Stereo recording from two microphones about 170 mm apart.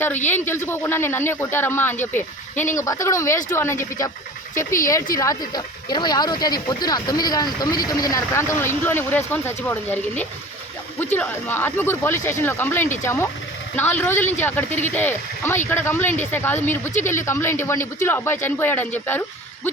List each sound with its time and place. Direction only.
0.3 s speech: 15° left (ahead or behind)